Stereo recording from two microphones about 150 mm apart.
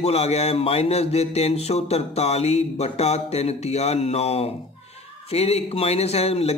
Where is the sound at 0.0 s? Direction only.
45° left (ahead or behind).